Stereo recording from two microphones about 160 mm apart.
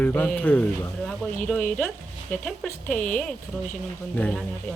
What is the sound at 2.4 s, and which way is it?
Speech, 5° left (ahead or behind).